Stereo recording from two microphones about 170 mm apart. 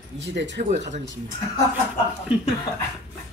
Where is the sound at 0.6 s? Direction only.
45° right (ahead or behind).